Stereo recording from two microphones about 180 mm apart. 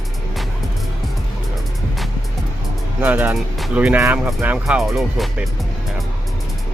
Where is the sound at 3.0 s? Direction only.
10° right (ahead or behind).